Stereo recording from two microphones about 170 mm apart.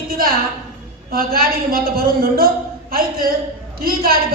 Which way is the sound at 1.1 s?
60° right (ahead or behind).